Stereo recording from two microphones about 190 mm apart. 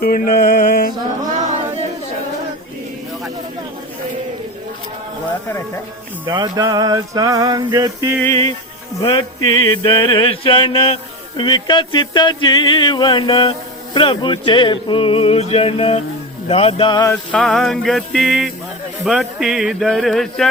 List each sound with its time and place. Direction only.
0.0 s mantra: 50° left (ahead or behind)
5.5 s speech: 10° left (ahead or behind)
6.2 s music: 20° right (ahead or behind)
9.0 s mantra: 25° left (ahead or behind)
17.1 s a sound: 5° left (ahead or behind)